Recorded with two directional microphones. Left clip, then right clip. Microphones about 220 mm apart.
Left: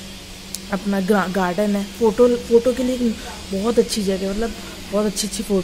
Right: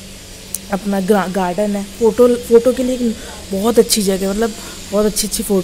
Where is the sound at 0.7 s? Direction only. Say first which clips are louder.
Right 4 dB; 10° right (ahead or behind).